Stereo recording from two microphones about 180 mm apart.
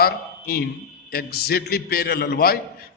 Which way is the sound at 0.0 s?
60° left (ahead or behind).